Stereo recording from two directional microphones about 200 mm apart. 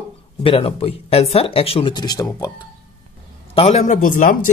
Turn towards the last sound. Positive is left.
turn(degrees=40)  # may be behind; listen again after turning